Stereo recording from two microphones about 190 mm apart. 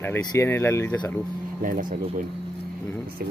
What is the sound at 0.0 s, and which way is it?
Speech, 15° left (ahead or behind).